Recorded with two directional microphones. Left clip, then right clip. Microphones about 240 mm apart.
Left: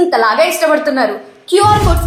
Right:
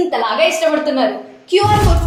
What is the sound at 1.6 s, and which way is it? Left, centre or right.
Music, centre.